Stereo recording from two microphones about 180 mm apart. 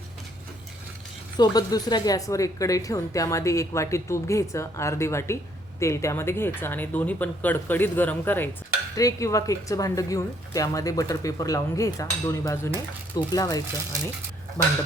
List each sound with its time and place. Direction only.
1.4 s a woman's voice: 20° left (ahead or behind)